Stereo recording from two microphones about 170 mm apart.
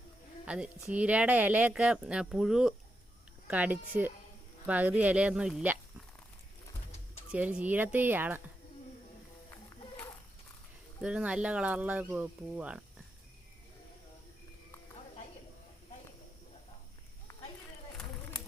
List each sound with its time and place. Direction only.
0.4 s speech: 5° right (ahead or behind)
7.3 s speech: 5° right (ahead or behind)
11.0 s speech: 5° right (ahead or behind)